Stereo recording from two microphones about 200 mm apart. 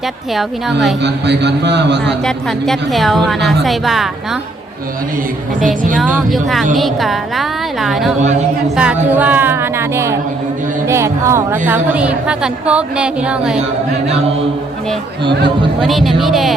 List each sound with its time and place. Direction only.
0.3 s a woman's voice: centre (ahead or behind)
1.0 s a man's voice: 60° right (ahead or behind)
2.2 s a woman's voice: centre (ahead or behind)
6.0 s a woman's voice: centre (ahead or behind)
15.8 s a woman's voice: centre (ahead or behind)